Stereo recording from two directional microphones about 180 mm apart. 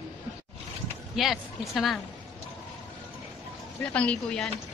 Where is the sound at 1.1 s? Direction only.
Centre (ahead or behind).